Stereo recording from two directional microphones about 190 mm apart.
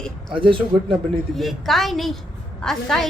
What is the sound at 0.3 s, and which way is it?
Speech, 25° right (ahead or behind).